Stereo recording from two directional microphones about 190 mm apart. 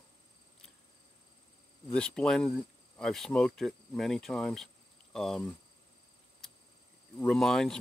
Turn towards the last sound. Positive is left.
turn(degrees=5)  # may be behind; listen again after turning